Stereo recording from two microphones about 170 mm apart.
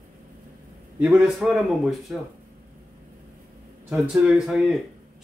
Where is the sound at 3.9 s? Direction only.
5° right (ahead or behind).